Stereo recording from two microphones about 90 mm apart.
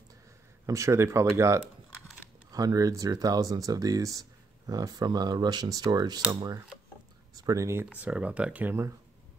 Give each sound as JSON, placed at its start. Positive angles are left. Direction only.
{"t": 0.7, "sound": "speech", "side_deg": -35}
{"t": 8.0, "sound": "speech", "side_deg": -15}